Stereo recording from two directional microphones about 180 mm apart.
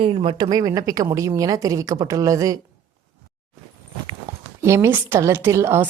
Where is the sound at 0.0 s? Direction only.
30° right (ahead or behind).